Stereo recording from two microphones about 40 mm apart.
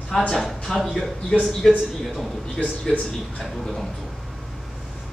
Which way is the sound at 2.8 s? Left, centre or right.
Left.